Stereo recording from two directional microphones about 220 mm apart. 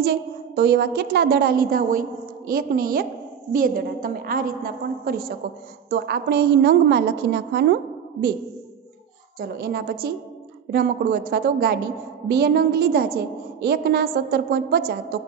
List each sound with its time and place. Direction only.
0.0 s a woman's voice: 45° right (ahead or behind)
9.4 s a woman's voice: 45° right (ahead or behind)